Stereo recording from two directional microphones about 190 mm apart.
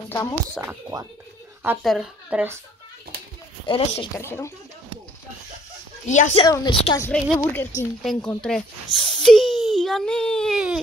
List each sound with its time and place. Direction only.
0.1 s speech: 15° left (ahead or behind)
0.6 s a child's voice: 10° right (ahead or behind)
3.6 s a woman's voice: 25° left (ahead or behind)
4.2 s a woman's voice: 15° left (ahead or behind)
6.0 s speech: 40° left (ahead or behind)
6.4 s a woman's voice: 25° left (ahead or behind)
7.3 s a woman's voice: 15° left (ahead or behind)
8.0 s a child's voice: centre (ahead or behind)